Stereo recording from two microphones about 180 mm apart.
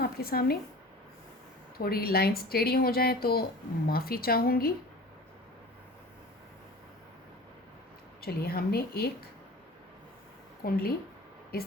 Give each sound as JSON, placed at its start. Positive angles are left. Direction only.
{"t": 0.0, "sound": "speech", "side_deg": 55}
{"t": 1.8, "sound": "speech", "side_deg": 60}
{"t": 8.2, "sound": "speech", "side_deg": 60}
{"t": 10.6, "sound": "speech", "side_deg": 55}